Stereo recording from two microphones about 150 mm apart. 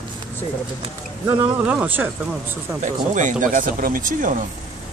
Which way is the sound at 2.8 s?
55° right (ahead or behind).